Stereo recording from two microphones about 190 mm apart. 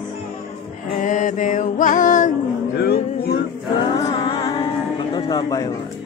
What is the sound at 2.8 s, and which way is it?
Music, 55° left (ahead or behind).